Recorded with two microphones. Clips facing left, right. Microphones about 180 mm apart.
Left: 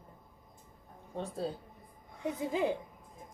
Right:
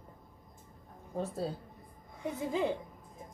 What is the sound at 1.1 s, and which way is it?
Speech, 5° right (ahead or behind).